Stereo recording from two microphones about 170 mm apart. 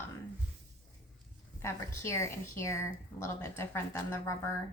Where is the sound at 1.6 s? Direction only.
15° left (ahead or behind).